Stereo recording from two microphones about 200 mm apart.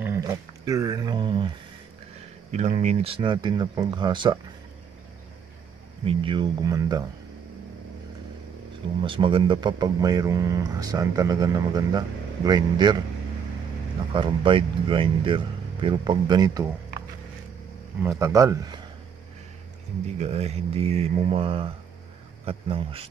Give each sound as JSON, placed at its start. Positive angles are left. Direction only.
{"t": 0.0, "sound": "speech", "side_deg": -15}
{"t": 2.5, "sound": "speech", "side_deg": -35}
{"t": 6.0, "sound": "speech", "side_deg": -25}
{"t": 9.0, "sound": "speech", "side_deg": -25}
{"t": 14.1, "sound": "speech", "side_deg": -25}
{"t": 18.2, "sound": "speech", "side_deg": -15}
{"t": 20.2, "sound": "speech", "side_deg": -30}